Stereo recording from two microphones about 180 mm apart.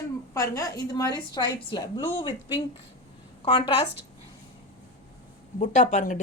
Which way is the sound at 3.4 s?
30° left (ahead or behind).